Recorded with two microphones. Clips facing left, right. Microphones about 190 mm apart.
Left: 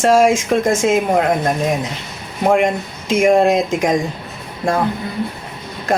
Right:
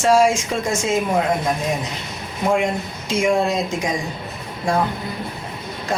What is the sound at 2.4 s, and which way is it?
Speech, 55° left (ahead or behind).